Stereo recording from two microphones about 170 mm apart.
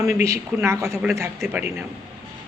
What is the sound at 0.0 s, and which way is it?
Speech, 20° right (ahead or behind).